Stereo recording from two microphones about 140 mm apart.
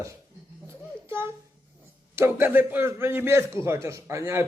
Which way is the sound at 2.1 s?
15° right (ahead or behind).